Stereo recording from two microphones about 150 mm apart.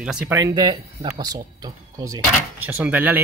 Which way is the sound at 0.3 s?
20° right (ahead or behind).